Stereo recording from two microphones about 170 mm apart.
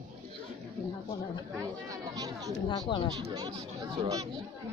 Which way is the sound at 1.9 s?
20° right (ahead or behind).